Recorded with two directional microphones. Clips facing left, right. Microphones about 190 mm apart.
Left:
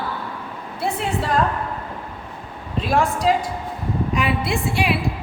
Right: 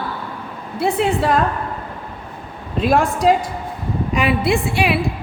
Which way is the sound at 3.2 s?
55° right (ahead or behind).